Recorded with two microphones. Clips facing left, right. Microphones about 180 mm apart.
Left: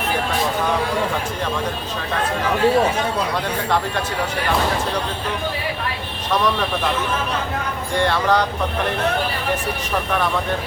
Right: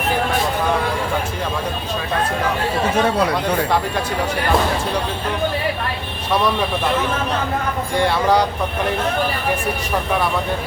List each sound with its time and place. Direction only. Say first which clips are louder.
7.9 s speech: right 1 dB; 10° right (ahead or behind)